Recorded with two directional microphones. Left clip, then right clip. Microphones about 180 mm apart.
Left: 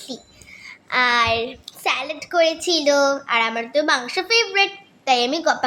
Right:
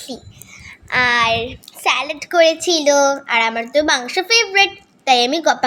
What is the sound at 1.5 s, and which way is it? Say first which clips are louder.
A woman's voice: right 5 dB; 5° right (ahead or behind).